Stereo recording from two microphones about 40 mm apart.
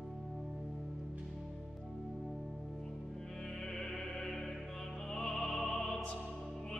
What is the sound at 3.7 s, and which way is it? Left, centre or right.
Music, centre.